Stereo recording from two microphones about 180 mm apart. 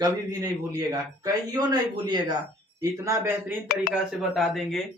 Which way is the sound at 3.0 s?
15° right (ahead or behind).